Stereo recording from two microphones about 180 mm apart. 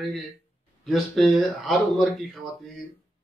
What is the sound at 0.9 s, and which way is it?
Speech, centre (ahead or behind).